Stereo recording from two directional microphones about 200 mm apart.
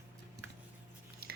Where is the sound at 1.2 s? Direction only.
50° right (ahead or behind).